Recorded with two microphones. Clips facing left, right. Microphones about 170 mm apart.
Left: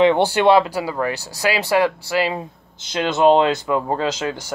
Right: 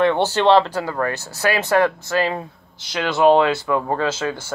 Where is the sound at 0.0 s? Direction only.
15° left (ahead or behind).